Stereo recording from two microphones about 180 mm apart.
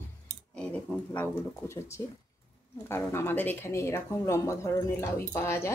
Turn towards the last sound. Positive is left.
turn(degrees=15)  # may be behind; listen again after turning